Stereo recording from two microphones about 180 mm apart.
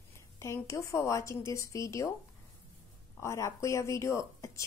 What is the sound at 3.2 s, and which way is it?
A woman's voice, 15° left (ahead or behind).